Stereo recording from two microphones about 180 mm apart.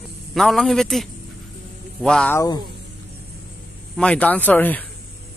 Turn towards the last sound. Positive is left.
turn(degrees=10)  # may be behind; listen again after turning